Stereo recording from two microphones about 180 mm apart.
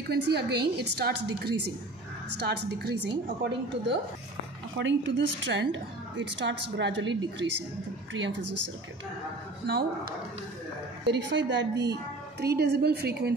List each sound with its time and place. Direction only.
0.1 s a woman's voice: 65° right (ahead or behind)
4.7 s a woman's voice: 85° right
9.7 s a woman's voice: 60° right (ahead or behind)
11.1 s a woman's voice: 80° right
11.8 s a woman's voice: 65° right (ahead or behind)